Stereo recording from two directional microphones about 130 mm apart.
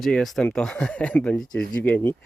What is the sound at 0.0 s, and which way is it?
Speech, centre (ahead or behind).